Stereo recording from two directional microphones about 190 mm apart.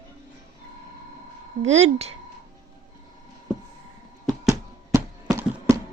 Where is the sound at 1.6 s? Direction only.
35° right (ahead or behind).